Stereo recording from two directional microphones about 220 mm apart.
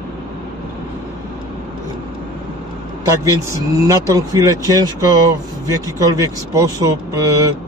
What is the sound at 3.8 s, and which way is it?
Speech, 15° right (ahead or behind).